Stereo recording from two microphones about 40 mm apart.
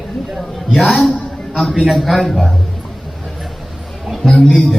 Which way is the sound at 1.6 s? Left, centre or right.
Centre.